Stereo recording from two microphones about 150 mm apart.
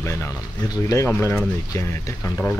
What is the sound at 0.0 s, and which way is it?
Speech, 20° left (ahead or behind).